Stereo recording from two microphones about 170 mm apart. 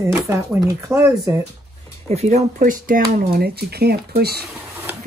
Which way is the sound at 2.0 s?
40° right (ahead or behind).